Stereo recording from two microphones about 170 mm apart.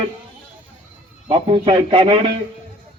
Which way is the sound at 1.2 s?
30° right (ahead or behind).